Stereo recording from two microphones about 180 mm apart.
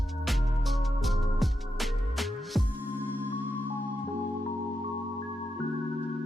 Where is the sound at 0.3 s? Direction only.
Centre (ahead or behind).